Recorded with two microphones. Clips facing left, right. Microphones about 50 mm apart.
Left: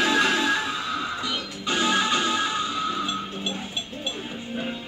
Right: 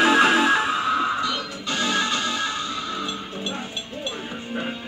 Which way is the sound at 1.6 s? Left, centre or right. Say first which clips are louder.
Left 2 dB; centre.